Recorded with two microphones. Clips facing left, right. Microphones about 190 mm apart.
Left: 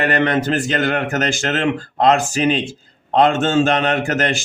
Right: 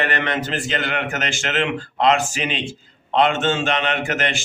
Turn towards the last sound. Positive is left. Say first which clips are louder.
# left 4 dB
turn(degrees=40)  # may be behind; listen again after turning